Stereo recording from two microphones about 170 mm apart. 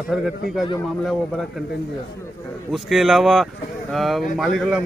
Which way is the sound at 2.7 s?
Centre (ahead or behind).